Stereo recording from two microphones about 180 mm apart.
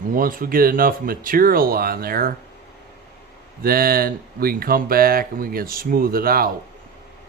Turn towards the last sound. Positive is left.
turn(degrees=-55)  # may be behind; listen again after turning